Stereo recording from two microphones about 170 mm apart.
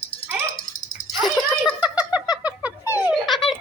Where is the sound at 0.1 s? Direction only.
35° left (ahead or behind).